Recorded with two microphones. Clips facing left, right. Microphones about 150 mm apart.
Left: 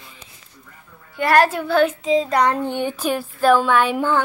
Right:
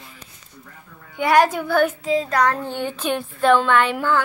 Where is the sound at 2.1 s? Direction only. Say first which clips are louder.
Left 3 dB; 25° left (ahead or behind).